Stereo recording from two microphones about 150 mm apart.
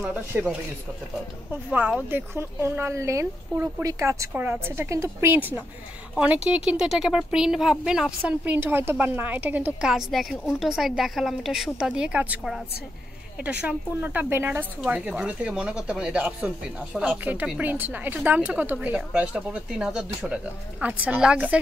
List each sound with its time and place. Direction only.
0.0 s a woman's voice: 10° right (ahead or behind)